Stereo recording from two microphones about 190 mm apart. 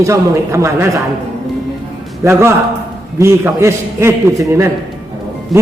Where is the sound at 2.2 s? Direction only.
15° right (ahead or behind).